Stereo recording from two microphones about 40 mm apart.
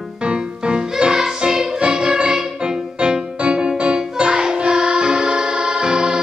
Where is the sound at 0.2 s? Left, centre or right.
Right.